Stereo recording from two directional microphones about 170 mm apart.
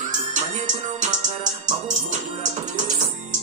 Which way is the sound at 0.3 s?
45° right (ahead or behind).